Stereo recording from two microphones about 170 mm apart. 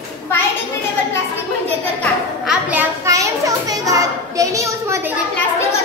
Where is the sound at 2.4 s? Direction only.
10° right (ahead or behind).